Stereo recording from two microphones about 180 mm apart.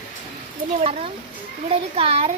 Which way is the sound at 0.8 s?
35° right (ahead or behind).